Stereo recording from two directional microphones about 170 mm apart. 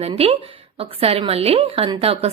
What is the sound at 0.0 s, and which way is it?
A woman's voice, 35° right (ahead or behind).